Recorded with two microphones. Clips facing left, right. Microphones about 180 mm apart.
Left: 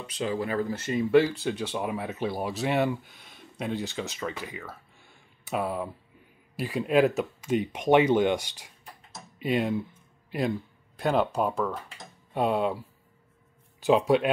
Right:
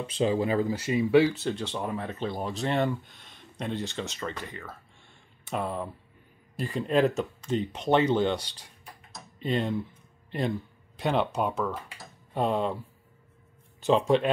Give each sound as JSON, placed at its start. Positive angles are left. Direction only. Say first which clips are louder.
{"t": 0.0, "sound": "speech", "louder": "right 4 dB", "side_deg": -25}
{"t": 9.1, "sound": "typing", "louder": "left 2 dB", "side_deg": 10}
{"t": 11.0, "sound": "speech", "louder": "left 2 dB", "side_deg": 0}
{"t": 13.8, "sound": "speech", "louder": "left 1 dB", "side_deg": 5}